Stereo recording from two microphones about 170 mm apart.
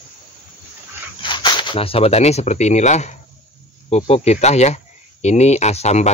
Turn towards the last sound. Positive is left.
turn(degrees=40)  # may be behind; listen again after turning